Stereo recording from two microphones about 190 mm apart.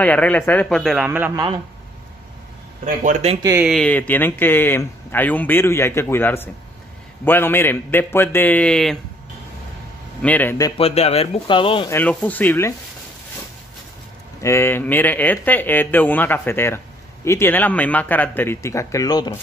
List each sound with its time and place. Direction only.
0.0 s a man's voice: 10° left (ahead or behind); by 1.4 s 10° right (ahead or behind)
2.8 s speech: 40° right (ahead or behind)
3.6 s speech: 5° left (ahead or behind)
10.2 s speech: 10° left (ahead or behind)
10.8 s speech: 35° left (ahead or behind)
11.9 s speech: 5° left (ahead or behind)
14.4 s speech: 15° left (ahead or behind)